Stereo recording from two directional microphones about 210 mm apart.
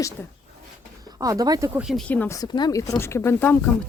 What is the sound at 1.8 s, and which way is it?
Speech, centre (ahead or behind).